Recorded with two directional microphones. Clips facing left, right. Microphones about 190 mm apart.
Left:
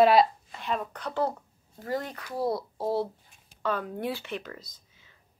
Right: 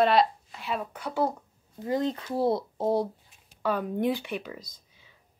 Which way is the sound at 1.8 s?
20° right (ahead or behind).